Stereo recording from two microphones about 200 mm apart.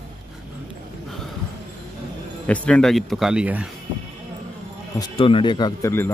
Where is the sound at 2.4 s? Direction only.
5° left (ahead or behind).